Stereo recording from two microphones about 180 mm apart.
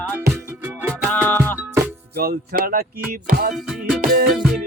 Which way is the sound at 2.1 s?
55° right (ahead or behind).